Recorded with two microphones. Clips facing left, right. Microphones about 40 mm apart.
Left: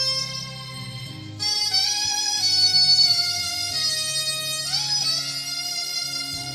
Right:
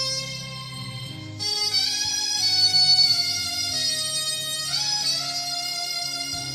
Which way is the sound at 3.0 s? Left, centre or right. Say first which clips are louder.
Left 1 dB; centre.